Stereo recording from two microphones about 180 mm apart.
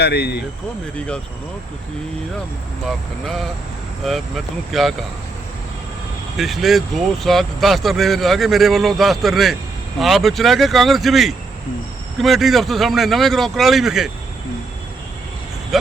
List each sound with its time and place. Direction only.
0.0 s speech: 65° left (ahead or behind)
0.9 s speech: 5° left (ahead or behind)
2.8 s speech: centre (ahead or behind)
6.3 s speech: centre (ahead or behind)
15.7 s speech: centre (ahead or behind)